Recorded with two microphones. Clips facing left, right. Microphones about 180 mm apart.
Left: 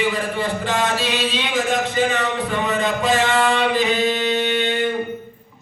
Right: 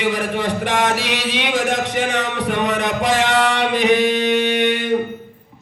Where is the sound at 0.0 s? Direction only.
80° right.